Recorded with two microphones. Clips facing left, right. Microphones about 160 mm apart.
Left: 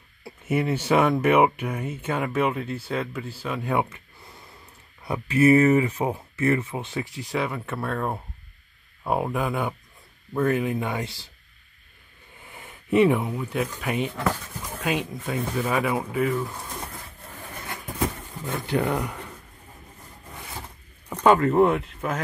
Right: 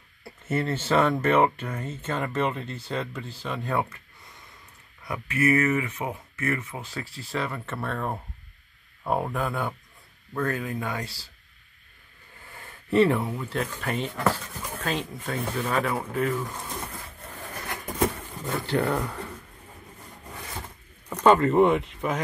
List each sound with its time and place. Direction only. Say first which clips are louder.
0.2 s speech: left 3 dB; 10° left (ahead or behind)
5.0 s speech: left 6 dB; 30° left (ahead or behind)
12.4 s speech: left 3 dB; 20° left (ahead or behind)
18.7 s speech: left 1 dB; 15° left (ahead or behind)
21.2 s speech: even; 5° left (ahead or behind)